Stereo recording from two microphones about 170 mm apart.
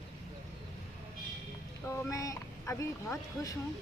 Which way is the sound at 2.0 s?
20° left (ahead or behind).